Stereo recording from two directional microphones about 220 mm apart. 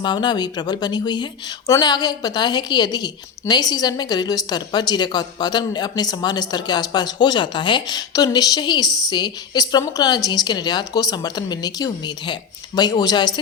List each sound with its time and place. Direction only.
0.0 s speech: 20° left (ahead or behind)